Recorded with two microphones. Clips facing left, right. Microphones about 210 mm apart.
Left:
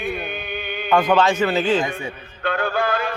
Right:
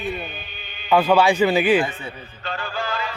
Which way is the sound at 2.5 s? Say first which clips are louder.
Left 7 dB; 55° left (ahead or behind).